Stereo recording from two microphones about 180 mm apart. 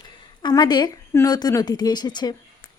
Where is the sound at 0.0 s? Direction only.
25° left (ahead or behind).